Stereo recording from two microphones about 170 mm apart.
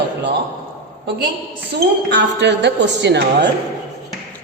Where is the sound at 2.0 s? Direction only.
90° right.